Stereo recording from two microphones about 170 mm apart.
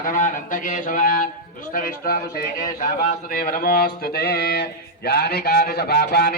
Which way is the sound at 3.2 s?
60° left (ahead or behind).